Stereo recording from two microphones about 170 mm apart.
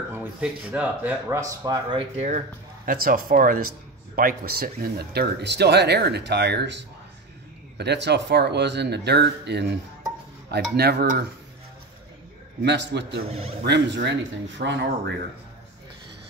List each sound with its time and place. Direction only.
0.1 s speech: 10° right (ahead or behind)
1.6 s speech: 25° right (ahead or behind)
2.1 s speech: 45° right (ahead or behind); by 9.8 s 80° right
10.5 s speech: 70° right (ahead or behind)
12.6 s speech: 85° right